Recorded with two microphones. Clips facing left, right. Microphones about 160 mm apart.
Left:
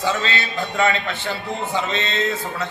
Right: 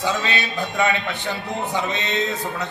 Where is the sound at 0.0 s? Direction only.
15° right (ahead or behind).